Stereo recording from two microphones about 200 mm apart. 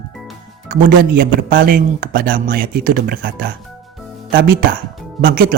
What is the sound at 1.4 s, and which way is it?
A man's voice, 60° right (ahead or behind).